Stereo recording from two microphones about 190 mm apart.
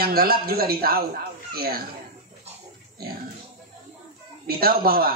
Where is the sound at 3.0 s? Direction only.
55° right (ahead or behind).